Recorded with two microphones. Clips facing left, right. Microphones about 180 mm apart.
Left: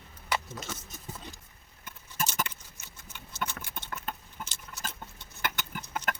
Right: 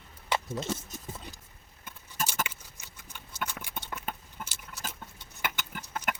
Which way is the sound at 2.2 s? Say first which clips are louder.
Even; 10° right (ahead or behind).